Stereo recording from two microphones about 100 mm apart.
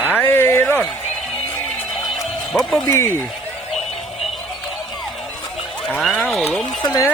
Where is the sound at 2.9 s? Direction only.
25° left (ahead or behind).